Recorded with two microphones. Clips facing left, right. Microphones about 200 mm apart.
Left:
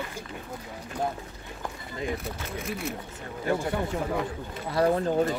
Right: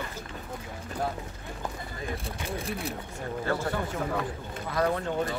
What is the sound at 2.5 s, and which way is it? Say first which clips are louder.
Speech: right 1 dB; 30° right (ahead or behind).